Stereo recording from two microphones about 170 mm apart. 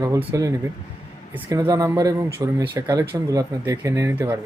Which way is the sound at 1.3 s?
15° right (ahead or behind).